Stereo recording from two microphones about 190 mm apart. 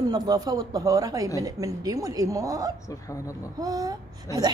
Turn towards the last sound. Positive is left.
turn(degrees=-20)  # may be behind; listen again after turning